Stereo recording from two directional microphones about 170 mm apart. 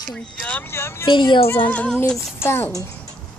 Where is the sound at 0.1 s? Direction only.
10° left (ahead or behind).